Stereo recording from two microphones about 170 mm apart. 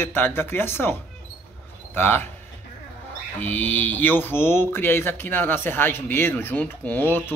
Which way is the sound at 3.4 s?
10° left (ahead or behind).